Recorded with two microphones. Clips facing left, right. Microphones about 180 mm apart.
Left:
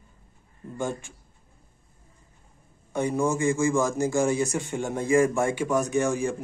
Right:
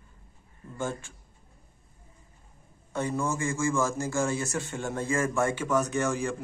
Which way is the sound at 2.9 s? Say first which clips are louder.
Left 5 dB; 15° left (ahead or behind).